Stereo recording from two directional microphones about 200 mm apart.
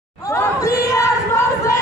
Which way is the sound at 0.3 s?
15° left (ahead or behind).